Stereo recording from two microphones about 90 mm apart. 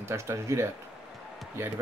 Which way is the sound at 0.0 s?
30° right (ahead or behind).